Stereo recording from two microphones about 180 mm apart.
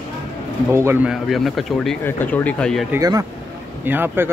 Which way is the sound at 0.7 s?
15° right (ahead or behind).